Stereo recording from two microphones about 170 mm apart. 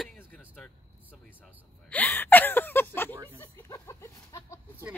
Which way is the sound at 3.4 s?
15° left (ahead or behind).